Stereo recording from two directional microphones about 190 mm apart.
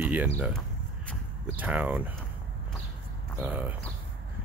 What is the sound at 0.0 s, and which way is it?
Speech, 10° right (ahead or behind).